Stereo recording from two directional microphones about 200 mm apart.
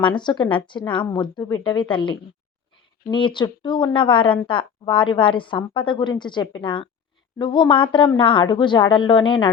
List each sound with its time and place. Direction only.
0.2 s a woman's voice: 20° left (ahead or behind)